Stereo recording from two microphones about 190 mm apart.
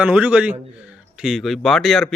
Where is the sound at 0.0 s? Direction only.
5° right (ahead or behind).